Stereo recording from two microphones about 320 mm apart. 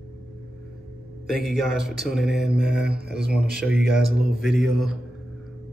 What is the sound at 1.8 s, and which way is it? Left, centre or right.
Speech, centre.